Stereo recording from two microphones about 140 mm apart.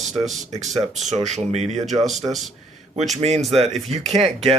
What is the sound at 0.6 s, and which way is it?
Speech, 55° right (ahead or behind).